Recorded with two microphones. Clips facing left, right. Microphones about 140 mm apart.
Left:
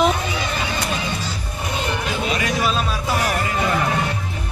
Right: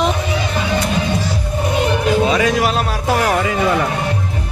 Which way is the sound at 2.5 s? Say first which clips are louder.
Right 4 dB; 80° right.